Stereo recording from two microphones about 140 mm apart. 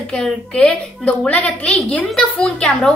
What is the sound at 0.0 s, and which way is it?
A woman's voice, 5° left (ahead or behind).